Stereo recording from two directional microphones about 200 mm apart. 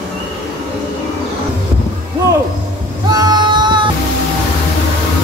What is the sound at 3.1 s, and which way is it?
Female singing, 20° right (ahead or behind).